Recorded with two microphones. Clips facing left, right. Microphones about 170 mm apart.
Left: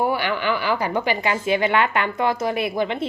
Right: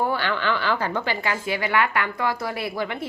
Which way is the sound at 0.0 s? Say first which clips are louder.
Left 2 dB; 15° left (ahead or behind).